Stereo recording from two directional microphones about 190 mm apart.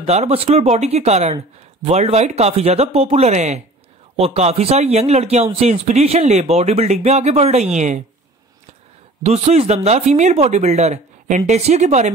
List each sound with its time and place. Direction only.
0.0 s speech: 35° right (ahead or behind)
9.2 s speech: 35° right (ahead or behind)